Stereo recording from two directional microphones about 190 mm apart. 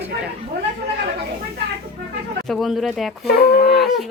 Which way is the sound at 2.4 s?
Centre (ahead or behind).